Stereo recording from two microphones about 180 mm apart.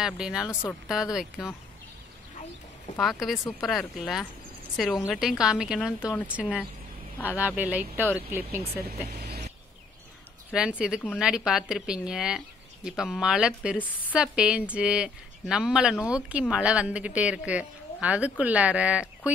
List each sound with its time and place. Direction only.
0.0 s speech: 5° right (ahead or behind)
3.0 s speech: centre (ahead or behind)
5.9 s a woman's voice: 10° left (ahead or behind)
6.2 s a woman's voice: 5° right (ahead or behind)
7.2 s a woman's voice: 15° left (ahead or behind)
7.4 s a woman's voice: 10° right (ahead or behind)
8.8 s speech: 65° right (ahead or behind)
10.8 s speech: 5° right (ahead or behind)
13.7 s a woman's voice: 10° left (ahead or behind)
14.1 s a woman's voice: 5° right (ahead or behind)